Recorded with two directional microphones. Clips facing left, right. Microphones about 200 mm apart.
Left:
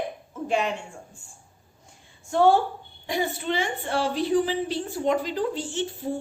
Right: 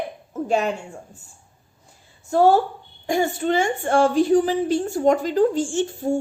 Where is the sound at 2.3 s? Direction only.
40° right (ahead or behind).